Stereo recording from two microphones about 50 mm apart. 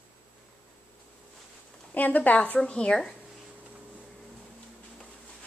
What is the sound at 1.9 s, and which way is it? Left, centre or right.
Speech, left.